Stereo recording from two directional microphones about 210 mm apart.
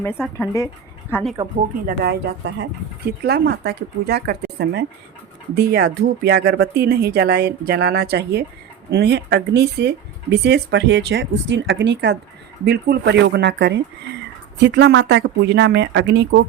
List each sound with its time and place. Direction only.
0.3 s speech: 15° left (ahead or behind)
1.1 s speech: centre (ahead or behind)
1.9 s speech: 50° right (ahead or behind)